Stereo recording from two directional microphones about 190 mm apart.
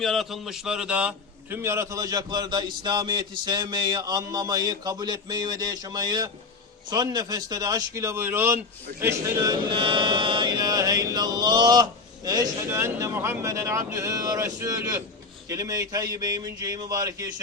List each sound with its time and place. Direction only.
0.0 s speech: centre (ahead or behind); by 17.2 s 20° right (ahead or behind)